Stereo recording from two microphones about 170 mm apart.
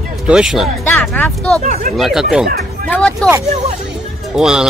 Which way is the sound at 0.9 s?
10° left (ahead or behind).